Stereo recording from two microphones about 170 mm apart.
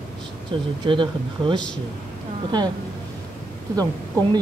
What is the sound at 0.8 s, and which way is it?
Speech, 30° right (ahead or behind).